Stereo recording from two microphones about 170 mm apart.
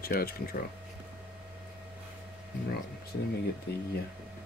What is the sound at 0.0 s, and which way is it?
Speech, 60° left (ahead or behind).